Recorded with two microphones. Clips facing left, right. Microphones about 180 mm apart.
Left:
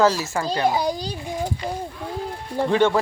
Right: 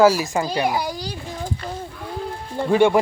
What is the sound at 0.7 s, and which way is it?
Speech, 20° left (ahead or behind).